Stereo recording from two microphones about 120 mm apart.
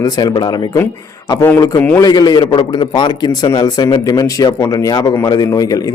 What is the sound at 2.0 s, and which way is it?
A man's voice, 35° left (ahead or behind).